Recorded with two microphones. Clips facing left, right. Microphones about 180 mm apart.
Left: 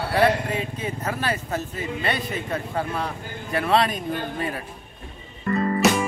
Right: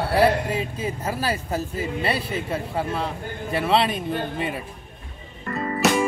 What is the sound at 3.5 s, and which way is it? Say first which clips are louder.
Speech: even; 30° right (ahead or behind).